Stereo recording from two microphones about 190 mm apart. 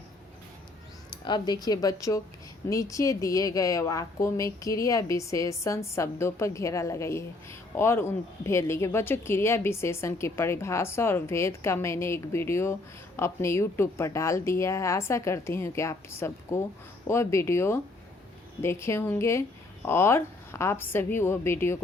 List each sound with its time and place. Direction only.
1.1 s speech: 25° left (ahead or behind)